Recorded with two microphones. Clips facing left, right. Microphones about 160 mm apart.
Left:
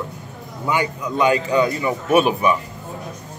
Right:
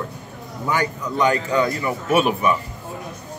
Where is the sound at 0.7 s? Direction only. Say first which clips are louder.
Left 1 dB; 15° left (ahead or behind).